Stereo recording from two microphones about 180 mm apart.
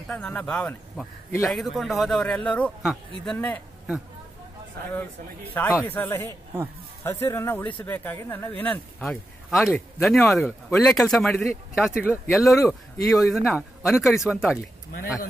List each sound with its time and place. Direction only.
0.1 s speech: 5° left (ahead or behind)
1.5 s speech: centre (ahead or behind)
5.5 s speech: 10° left (ahead or behind)
12.5 s speech: 15° left (ahead or behind)
13.1 s speech: centre (ahead or behind)